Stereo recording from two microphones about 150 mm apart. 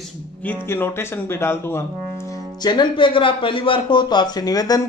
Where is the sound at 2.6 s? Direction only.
30° left (ahead or behind).